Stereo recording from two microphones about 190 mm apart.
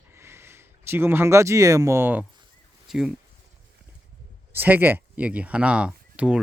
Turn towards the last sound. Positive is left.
turn(degrees=-5)  # may be behind; listen again after turning